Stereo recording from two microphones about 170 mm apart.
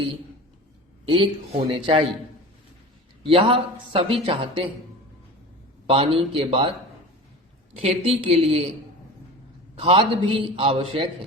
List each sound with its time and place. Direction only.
1.0 s speech: 30° right (ahead or behind)
3.2 s speech: 30° right (ahead or behind)
5.9 s speech: 35° right (ahead or behind)
9.7 s speech: 35° right (ahead or behind)